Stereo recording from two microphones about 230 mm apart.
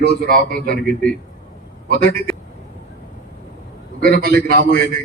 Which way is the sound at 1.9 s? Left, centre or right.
Right.